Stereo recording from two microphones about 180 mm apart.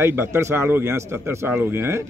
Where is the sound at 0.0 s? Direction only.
15° right (ahead or behind).